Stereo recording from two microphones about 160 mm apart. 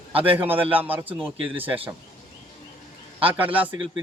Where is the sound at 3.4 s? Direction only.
10° right (ahead or behind).